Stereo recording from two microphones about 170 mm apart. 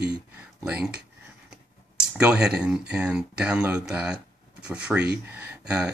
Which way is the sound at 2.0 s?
5° right (ahead or behind).